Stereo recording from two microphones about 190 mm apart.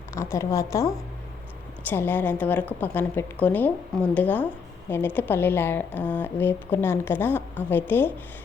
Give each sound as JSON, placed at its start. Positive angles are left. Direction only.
{"t": 0.1, "sound": "a woman's voice", "side_deg": 15}